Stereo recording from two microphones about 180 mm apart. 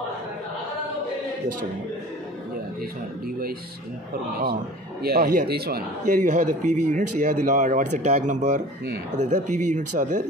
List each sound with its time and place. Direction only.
5.0 s a man's voice: 55° right (ahead or behind)